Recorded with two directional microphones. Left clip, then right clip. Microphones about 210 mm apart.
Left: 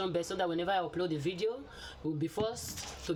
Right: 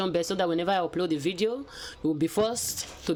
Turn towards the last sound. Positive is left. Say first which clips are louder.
# right 8 dB
turn(degrees=-45)  # may be behind; listen again after turning